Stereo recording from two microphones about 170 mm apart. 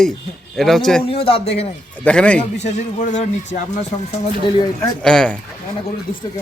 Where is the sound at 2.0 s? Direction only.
5° left (ahead or behind).